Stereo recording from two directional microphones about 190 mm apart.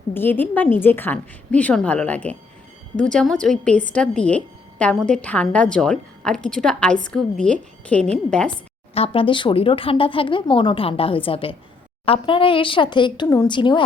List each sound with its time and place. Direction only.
0.1 s a woman's voice: 10° left (ahead or behind)
9.0 s speech: 30° left (ahead or behind)